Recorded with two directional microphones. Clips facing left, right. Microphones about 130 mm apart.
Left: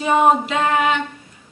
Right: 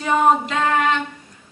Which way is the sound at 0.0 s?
15° left (ahead or behind).